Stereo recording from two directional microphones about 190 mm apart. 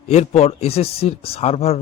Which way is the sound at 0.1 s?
35° left (ahead or behind).